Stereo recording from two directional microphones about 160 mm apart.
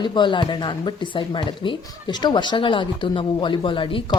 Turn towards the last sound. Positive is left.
turn(degrees=30)  # may be behind; listen again after turning